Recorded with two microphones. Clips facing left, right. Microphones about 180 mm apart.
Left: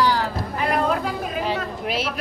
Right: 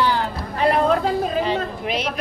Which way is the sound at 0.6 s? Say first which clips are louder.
Right 5 dB; 30° right (ahead or behind).